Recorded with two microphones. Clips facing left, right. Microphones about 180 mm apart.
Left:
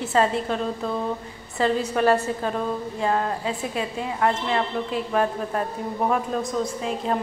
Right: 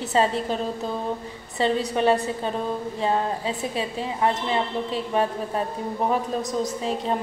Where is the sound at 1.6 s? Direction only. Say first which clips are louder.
Left 1 dB; 25° right (ahead or behind).